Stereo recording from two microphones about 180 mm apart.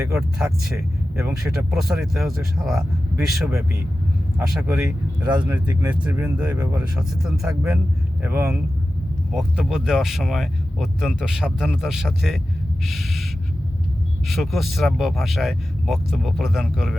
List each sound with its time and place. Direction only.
0.2 s speech: 5° right (ahead or behind)
1.5 s speech: centre (ahead or behind)
4.4 s speech: 5° right (ahead or behind)
4.9 s speech: 25° right (ahead or behind); by 6.6 s 5° right (ahead or behind)
6.6 s speech: 20° right (ahead or behind)
7.2 s speech: 5° right (ahead or behind)
12.8 s gasp: centre (ahead or behind)
14.3 s speech: centre (ahead or behind)